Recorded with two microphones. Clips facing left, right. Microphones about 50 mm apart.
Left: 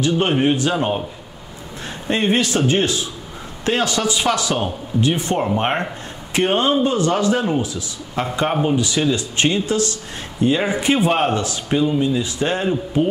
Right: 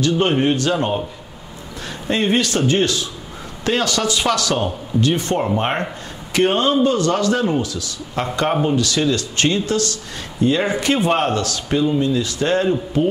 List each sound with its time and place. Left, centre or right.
0.2 s speech: centre
2.0 s speech: centre
8.5 s a man's voice: centre
8.7 s speech: centre